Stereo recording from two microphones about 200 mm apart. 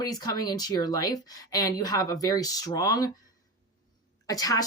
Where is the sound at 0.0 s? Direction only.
20° left (ahead or behind).